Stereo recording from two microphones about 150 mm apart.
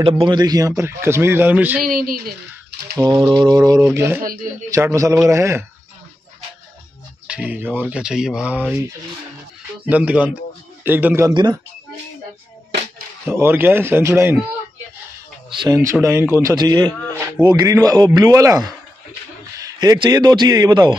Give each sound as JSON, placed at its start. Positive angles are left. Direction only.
{"t": 0.0, "sound": "a man's voice", "side_deg": -30}
{"t": 1.8, "sound": "speech", "side_deg": -75}
{"t": 3.0, "sound": "speech", "side_deg": -30}
{"t": 3.8, "sound": "a man's voice", "side_deg": -15}
{"t": 7.2, "sound": "a man's voice", "side_deg": -10}
{"t": 9.8, "sound": "a man's voice", "side_deg": -10}
{"t": 11.3, "sound": "speech", "side_deg": -30}
{"t": 13.3, "sound": "a man's voice", "side_deg": -15}
{"t": 15.7, "sound": "speech", "side_deg": -20}
{"t": 16.5, "sound": "speech", "side_deg": -30}